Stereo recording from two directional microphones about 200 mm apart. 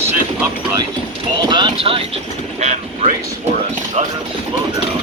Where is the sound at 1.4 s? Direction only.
20° right (ahead or behind).